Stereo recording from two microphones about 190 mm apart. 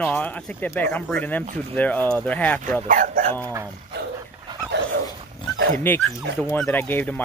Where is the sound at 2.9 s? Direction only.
45° right (ahead or behind).